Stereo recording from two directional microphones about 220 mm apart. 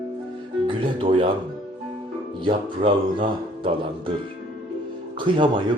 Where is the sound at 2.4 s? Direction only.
25° right (ahead or behind).